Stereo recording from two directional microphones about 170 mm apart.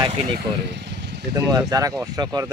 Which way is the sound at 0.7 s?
80° right.